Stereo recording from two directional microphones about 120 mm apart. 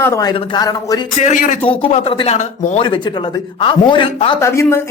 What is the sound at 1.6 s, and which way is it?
Speech, 50° left (ahead or behind).